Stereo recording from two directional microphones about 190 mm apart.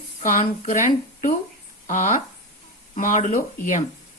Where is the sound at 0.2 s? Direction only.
40° left (ahead or behind).